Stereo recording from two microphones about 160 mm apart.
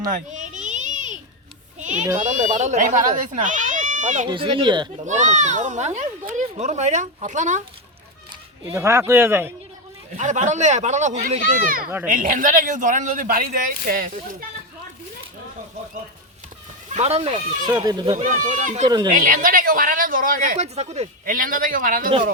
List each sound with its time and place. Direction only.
0.0 s a sound: 55° right (ahead or behind)
2.2 s speech: 50° right (ahead or behind)
4.3 s speech: 30° right (ahead or behind)
5.0 s speech: 50° right (ahead or behind)
8.7 s speech: 15° right (ahead or behind)
10.2 s speech: 50° right (ahead or behind)
11.6 s speech: 60° right (ahead or behind)
16.9 s speech: 40° right (ahead or behind)
17.7 s speech: 25° right (ahead or behind)
18.1 s speech: 50° right (ahead or behind)
18.9 s speech: 25° right (ahead or behind)
19.1 s speech: 60° right (ahead or behind); by 21.1 s 40° right (ahead or behind)
21.2 s speech: 60° right (ahead or behind)